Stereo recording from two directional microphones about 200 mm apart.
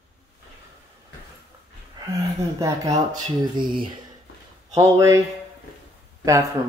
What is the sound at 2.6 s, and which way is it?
Speech, 15° right (ahead or behind).